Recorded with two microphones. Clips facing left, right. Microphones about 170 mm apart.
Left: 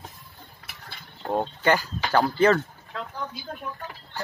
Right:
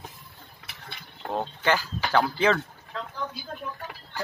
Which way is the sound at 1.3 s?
10° left (ahead or behind).